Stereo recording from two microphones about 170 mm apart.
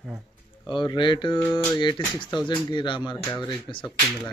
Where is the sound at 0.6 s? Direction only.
25° left (ahead or behind).